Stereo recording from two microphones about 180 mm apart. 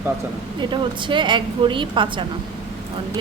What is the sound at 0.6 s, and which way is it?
A woman's voice, 25° right (ahead or behind).